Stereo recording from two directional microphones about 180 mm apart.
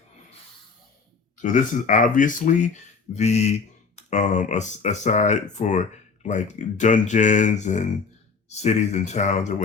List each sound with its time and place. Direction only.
1.4 s speech: 45° left (ahead or behind)